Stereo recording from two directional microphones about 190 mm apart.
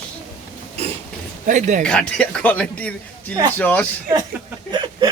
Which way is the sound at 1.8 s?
5° left (ahead or behind).